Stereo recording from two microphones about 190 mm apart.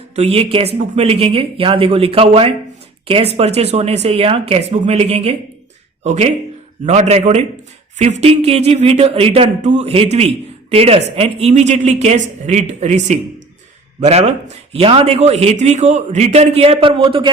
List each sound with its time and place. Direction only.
0.2 s a man's voice: 30° right (ahead or behind)